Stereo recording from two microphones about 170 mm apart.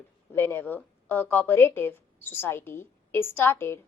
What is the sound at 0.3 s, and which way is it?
A woman's voice, 10° left (ahead or behind).